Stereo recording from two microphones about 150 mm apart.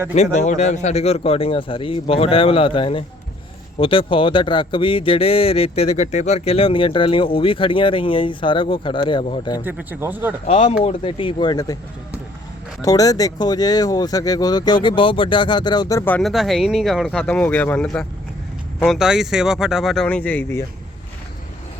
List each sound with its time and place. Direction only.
0.1 s a man's voice: 50° left (ahead or behind)
9.6 s speech: 15° right (ahead or behind)
10.4 s a man's voice: 40° left (ahead or behind)
12.8 s speech: 25° left (ahead or behind)
16.2 s speech: centre (ahead or behind)
18.9 s speech: 5° right (ahead or behind); by 20.7 s 15° left (ahead or behind)